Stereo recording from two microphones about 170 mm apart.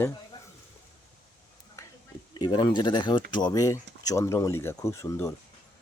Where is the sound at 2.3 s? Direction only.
25° left (ahead or behind).